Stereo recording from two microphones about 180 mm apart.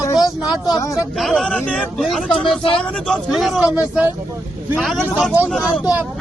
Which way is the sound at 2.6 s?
30° left (ahead or behind).